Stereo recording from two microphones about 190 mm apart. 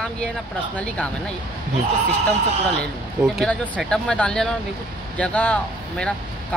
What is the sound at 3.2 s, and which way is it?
Speech, centre (ahead or behind).